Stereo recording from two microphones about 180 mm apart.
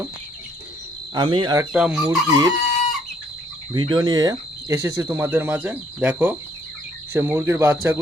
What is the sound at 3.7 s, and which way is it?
Speech, 25° right (ahead or behind).